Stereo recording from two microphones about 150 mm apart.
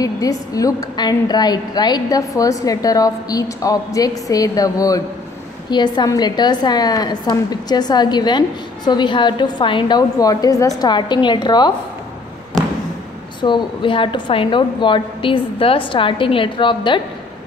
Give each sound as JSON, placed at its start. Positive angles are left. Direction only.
{"t": 0.0, "sound": "a woman's voice", "side_deg": 25}
{"t": 13.4, "sound": "a woman's voice", "side_deg": 30}